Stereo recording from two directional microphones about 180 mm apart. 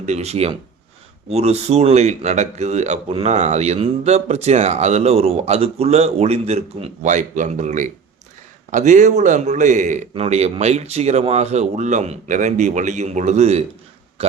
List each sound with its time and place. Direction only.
0.0 s speech: 35° right (ahead or behind)